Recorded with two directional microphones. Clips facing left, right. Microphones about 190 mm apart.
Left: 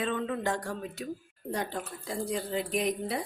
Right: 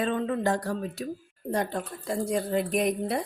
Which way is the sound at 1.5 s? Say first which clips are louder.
Right 5 dB; 50° right (ahead or behind).